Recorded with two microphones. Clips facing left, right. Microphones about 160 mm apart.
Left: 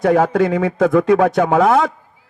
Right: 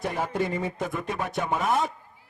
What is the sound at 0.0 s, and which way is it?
A man's voice, 90° left.